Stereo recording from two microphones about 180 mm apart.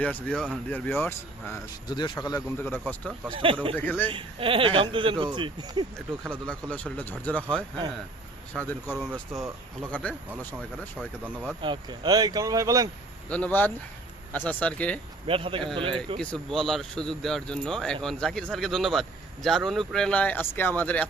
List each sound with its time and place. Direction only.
0.0 s speech: 5° left (ahead or behind)
3.3 s speech: 30° right (ahead or behind)
3.8 s speech: 10° left (ahead or behind)
4.1 s speech: 30° right (ahead or behind)
6.5 s speech: 5° left (ahead or behind)
8.5 s speech: centre (ahead or behind)
10.9 s speech: 5° right (ahead or behind)
11.6 s speech: 25° right (ahead or behind)
13.2 s speech: 10° left (ahead or behind)
15.3 s a man's voice: 30° right (ahead or behind)
16.1 s speech: 5° left (ahead or behind)